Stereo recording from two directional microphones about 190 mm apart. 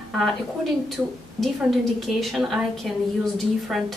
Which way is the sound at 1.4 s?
Centre (ahead or behind).